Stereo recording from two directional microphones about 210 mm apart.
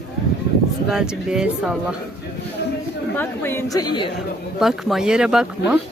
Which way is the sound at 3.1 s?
10° left (ahead or behind).